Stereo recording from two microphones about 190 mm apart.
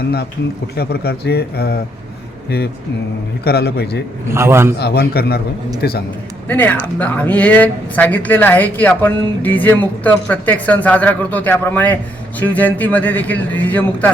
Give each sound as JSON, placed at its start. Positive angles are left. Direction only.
{"t": 0.8, "sound": "a man's voice", "side_deg": 55}
{"t": 3.4, "sound": "a man's voice", "side_deg": 55}
{"t": 4.3, "sound": "a man's voice", "side_deg": -15}
{"t": 4.8, "sound": "a man's voice", "side_deg": 55}
{"t": 6.5, "sound": "speech", "side_deg": 10}